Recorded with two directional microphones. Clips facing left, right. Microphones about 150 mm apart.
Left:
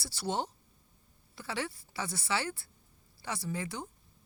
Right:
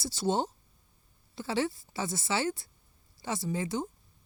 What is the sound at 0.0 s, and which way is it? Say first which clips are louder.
Speech: right 5 dB; 20° right (ahead or behind).